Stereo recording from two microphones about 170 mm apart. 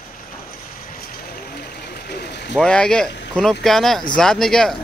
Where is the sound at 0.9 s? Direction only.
60° left (ahead or behind).